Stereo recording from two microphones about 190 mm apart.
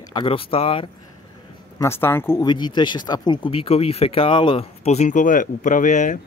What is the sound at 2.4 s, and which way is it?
Speech, 25° left (ahead or behind).